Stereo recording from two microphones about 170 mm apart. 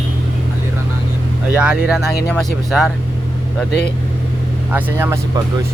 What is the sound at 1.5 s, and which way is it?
Speech, 5° right (ahead or behind).